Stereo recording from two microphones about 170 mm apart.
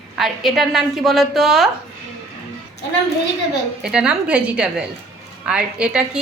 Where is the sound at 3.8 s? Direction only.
5° right (ahead or behind).